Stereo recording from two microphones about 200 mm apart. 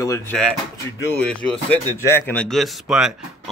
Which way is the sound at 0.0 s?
15° left (ahead or behind).